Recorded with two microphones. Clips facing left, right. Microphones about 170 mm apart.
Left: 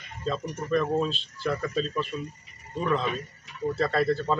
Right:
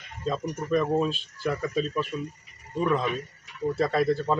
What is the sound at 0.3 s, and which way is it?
Speech, 15° right (ahead or behind).